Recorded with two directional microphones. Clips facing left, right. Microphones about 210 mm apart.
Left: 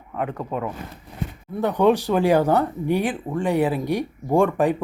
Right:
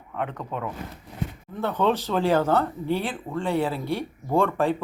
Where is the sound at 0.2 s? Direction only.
5° left (ahead or behind).